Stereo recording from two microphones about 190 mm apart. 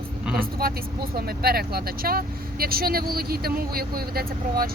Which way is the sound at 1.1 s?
55° right (ahead or behind).